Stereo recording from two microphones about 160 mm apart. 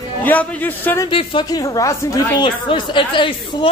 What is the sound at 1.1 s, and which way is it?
A woman's voice, 35° left (ahead or behind).